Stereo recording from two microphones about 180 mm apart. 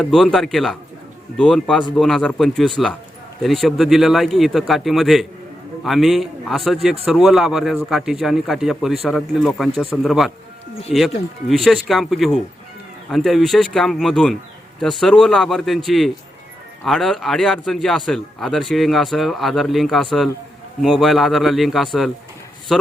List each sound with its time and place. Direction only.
0.0 s speech: centre (ahead or behind)